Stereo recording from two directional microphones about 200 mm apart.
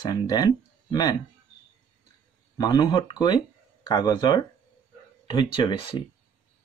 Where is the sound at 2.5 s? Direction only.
20° left (ahead or behind).